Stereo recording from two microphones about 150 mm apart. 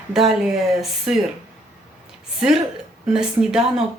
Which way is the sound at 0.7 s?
Centre (ahead or behind).